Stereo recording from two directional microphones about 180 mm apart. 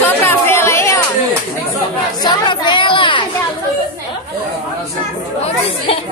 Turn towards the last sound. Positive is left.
turn(degrees=30)  # may be behind; listen again after turning